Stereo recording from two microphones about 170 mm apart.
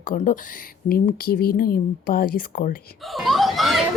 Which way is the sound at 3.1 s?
Centre (ahead or behind).